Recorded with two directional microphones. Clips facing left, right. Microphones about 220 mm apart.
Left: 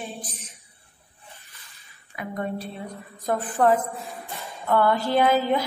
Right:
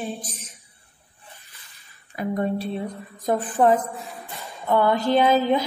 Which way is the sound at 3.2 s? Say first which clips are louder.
Right 2 dB; 15° right (ahead or behind).